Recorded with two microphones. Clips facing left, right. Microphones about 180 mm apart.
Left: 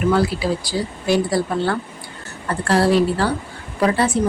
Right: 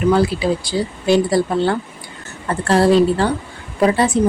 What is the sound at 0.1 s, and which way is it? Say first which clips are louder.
Speech: right 4 dB; 20° right (ahead or behind).